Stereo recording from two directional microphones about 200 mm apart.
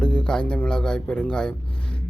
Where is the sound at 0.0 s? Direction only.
5° left (ahead or behind).